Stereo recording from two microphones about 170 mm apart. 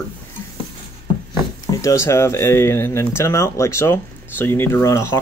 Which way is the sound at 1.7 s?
20° left (ahead or behind).